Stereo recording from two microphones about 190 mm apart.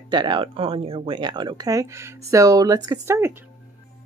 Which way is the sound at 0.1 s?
25° right (ahead or behind).